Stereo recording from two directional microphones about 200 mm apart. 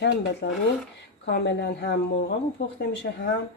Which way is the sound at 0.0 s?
55° left (ahead or behind).